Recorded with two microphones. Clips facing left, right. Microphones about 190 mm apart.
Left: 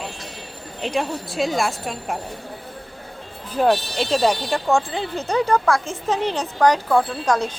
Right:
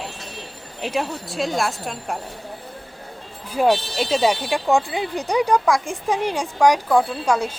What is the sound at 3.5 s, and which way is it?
Speech, 10° right (ahead or behind).